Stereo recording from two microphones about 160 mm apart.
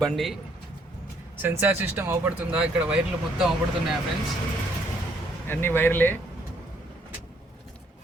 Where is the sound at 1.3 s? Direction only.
15° right (ahead or behind).